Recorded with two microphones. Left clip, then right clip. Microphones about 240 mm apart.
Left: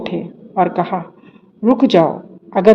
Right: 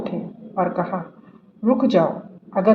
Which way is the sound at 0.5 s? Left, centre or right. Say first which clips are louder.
Left 6 dB; left.